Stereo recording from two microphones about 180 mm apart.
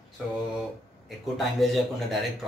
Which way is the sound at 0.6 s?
Centre (ahead or behind).